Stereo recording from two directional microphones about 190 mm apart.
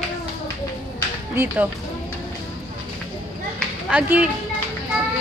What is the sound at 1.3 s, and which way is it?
Speech, 10° right (ahead or behind).